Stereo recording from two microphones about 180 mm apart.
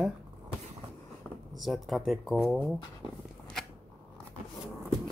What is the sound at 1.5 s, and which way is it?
Speech, centre (ahead or behind).